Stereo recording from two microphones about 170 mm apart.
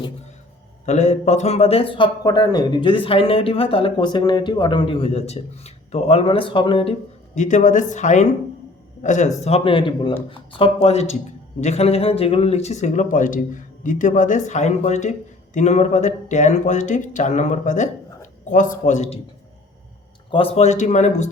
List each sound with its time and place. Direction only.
0.9 s speech: 45° left (ahead or behind)
7.3 s speech: 45° left (ahead or behind)
9.4 s speech: 35° left (ahead or behind)
20.3 s speech: 35° left (ahead or behind)